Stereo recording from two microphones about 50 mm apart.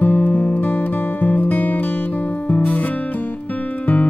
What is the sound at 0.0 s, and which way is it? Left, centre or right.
Music, left.